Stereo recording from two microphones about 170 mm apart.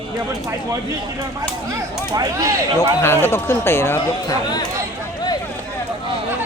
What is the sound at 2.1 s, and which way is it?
Speech, 20° right (ahead or behind).